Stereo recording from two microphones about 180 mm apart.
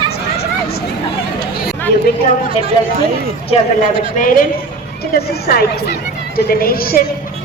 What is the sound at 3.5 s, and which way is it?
Speech, 35° left (ahead or behind).